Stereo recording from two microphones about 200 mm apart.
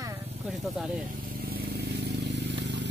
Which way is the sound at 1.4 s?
50° right (ahead or behind).